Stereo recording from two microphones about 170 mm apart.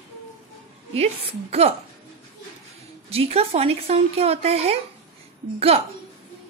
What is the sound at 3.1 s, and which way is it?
Speech, 35° right (ahead or behind).